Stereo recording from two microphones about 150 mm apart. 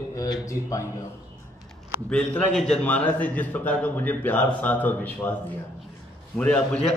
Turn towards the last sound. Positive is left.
turn(degrees=10)  # may be behind; listen again after turning